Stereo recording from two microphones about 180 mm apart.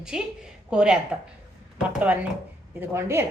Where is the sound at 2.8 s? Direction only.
15° right (ahead or behind).